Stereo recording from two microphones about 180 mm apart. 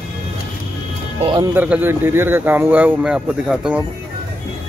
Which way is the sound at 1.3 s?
15° right (ahead or behind).